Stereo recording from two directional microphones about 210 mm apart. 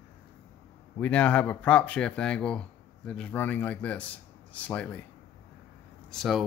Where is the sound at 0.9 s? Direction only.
5° left (ahead or behind).